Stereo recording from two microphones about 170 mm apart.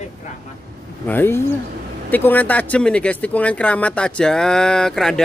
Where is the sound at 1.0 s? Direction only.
10° left (ahead or behind).